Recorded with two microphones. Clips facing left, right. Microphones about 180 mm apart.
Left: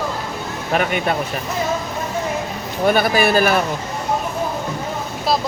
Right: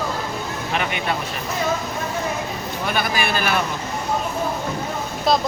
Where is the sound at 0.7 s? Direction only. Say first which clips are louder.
Left 6 dB; 45° left (ahead or behind).